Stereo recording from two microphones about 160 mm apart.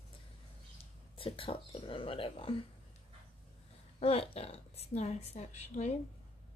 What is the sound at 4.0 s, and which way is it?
A woman's voice, 40° left (ahead or behind).